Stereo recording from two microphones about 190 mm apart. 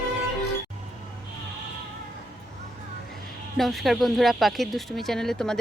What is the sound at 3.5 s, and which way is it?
Speech, centre (ahead or behind).